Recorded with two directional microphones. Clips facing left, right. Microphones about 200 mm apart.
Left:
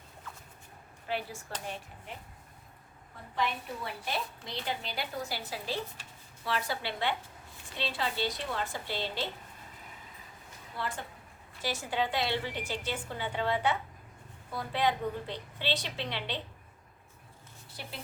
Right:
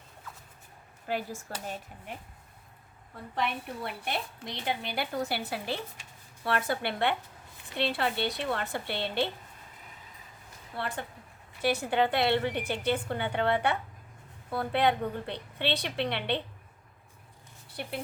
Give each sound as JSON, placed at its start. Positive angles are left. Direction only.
{"t": 1.0, "sound": "speech", "side_deg": -45}
{"t": 3.3, "sound": "a woman's voice", "side_deg": -60}
{"t": 10.8, "sound": "a woman's voice", "side_deg": -60}
{"t": 17.8, "sound": "a woman's voice", "side_deg": -60}